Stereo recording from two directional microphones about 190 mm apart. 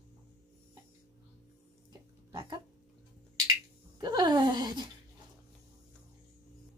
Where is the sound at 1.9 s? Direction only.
20° right (ahead or behind).